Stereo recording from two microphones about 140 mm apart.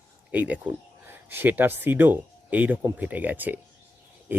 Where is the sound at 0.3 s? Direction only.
10° right (ahead or behind).